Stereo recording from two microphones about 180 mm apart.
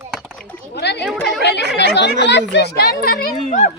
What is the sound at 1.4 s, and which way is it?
Speech, 70° left (ahead or behind).